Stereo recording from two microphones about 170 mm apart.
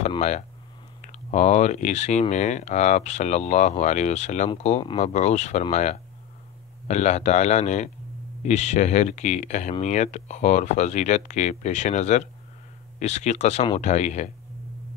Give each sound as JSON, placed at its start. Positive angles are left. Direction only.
{"t": 1.0, "sound": "speech", "side_deg": 45}